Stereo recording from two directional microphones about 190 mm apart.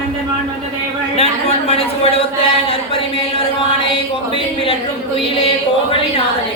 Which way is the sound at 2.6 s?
30° left (ahead or behind).